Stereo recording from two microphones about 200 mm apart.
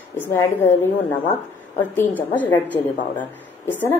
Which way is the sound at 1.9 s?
10° left (ahead or behind).